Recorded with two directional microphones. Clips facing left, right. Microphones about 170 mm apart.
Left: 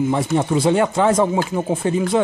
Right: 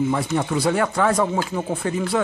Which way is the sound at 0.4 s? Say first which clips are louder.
Left 5 dB; 25° left (ahead or behind).